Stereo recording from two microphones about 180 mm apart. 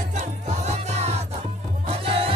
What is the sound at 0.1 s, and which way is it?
Music, 40° right (ahead or behind).